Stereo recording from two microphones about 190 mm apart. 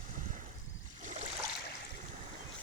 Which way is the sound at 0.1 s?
40° right (ahead or behind).